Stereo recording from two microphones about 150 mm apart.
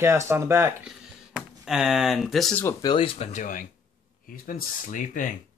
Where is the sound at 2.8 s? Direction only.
35° left (ahead or behind).